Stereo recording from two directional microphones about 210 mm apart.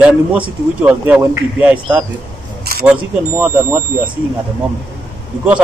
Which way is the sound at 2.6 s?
45° right (ahead or behind).